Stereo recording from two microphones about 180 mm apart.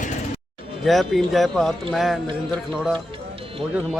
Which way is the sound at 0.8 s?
Centre (ahead or behind).